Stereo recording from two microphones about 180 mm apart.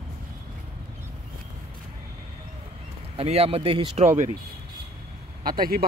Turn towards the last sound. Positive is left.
turn(degrees=-55)  # may be behind; listen again after turning